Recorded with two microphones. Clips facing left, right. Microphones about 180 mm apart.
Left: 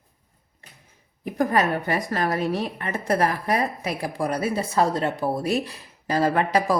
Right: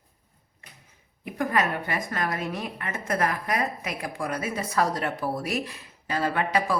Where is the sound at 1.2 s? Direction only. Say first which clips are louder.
Left 4 dB; 35° left (ahead or behind).